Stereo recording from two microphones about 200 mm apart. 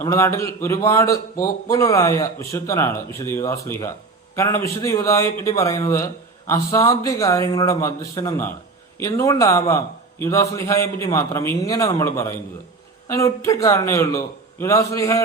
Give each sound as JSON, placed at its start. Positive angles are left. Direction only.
{"t": 0.0, "sound": "a man's voice", "side_deg": 15}